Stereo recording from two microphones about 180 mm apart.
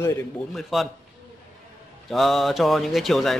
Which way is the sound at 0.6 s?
Centre (ahead or behind).